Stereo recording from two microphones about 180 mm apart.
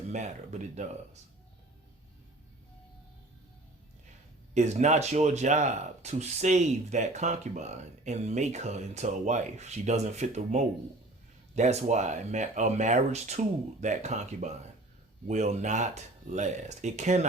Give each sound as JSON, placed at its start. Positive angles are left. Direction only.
{"t": 0.1, "sound": "speech", "side_deg": -40}
{"t": 4.5, "sound": "speech", "side_deg": -40}